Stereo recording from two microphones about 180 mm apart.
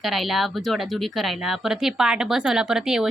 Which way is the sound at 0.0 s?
Centre (ahead or behind).